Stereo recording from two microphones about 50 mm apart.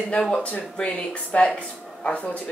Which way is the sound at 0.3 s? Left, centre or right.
Left.